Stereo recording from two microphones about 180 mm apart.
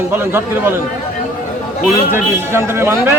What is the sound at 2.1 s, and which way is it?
A man's voice, 15° right (ahead or behind).